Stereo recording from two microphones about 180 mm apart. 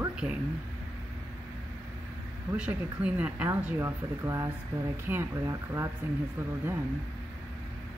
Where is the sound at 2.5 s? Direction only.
5° right (ahead or behind).